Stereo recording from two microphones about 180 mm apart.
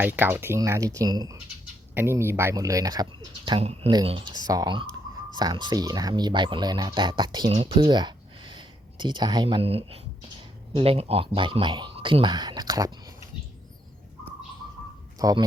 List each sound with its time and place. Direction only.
0.0 s speech: 10° right (ahead or behind)
15.2 s a man's voice: 20° right (ahead or behind)